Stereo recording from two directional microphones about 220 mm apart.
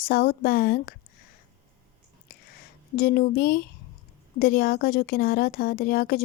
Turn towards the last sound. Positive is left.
turn(degrees=45)  # may be behind; listen again after turning